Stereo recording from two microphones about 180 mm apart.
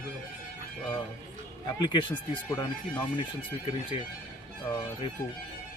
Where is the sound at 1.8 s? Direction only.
25° left (ahead or behind).